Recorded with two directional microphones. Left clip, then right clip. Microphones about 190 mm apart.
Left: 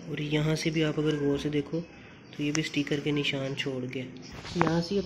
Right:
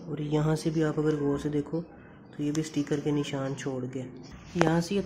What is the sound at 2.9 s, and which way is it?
Speech, 5° right (ahead or behind).